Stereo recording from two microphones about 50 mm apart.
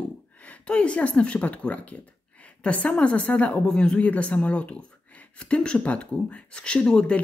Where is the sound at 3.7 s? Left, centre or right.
Centre.